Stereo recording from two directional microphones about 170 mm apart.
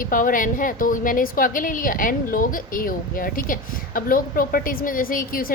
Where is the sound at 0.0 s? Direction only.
55° left (ahead or behind).